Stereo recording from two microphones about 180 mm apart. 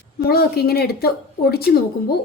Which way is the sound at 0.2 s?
60° left (ahead or behind).